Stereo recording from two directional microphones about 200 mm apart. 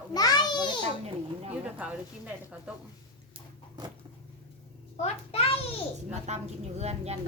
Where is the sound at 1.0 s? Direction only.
30° right (ahead or behind).